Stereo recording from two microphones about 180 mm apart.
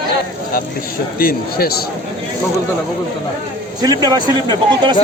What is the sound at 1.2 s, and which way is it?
Speech, 55° left (ahead or behind).